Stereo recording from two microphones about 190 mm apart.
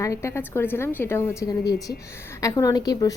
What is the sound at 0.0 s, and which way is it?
A woman's voice, 15° left (ahead or behind).